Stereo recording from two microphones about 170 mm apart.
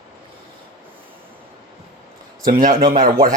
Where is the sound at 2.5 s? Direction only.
55° right (ahead or behind).